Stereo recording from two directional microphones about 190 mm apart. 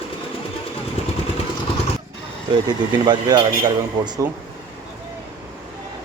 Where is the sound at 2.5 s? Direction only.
20° right (ahead or behind).